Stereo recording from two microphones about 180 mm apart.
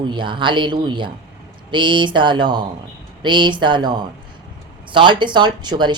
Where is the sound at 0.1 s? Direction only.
25° right (ahead or behind).